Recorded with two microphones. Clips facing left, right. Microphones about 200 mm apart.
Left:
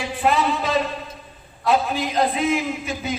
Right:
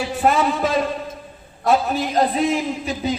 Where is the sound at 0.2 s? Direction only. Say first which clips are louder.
Right 2 dB; 45° right (ahead or behind).